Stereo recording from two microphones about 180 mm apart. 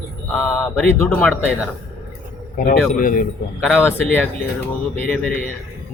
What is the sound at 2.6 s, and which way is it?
Speech, 50° left (ahead or behind).